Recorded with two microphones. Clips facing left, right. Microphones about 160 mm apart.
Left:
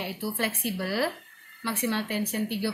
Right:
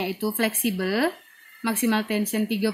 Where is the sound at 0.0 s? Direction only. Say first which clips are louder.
Right 6 dB; 90° right.